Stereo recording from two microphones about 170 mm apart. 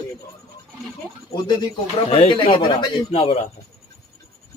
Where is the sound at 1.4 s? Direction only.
30° left (ahead or behind).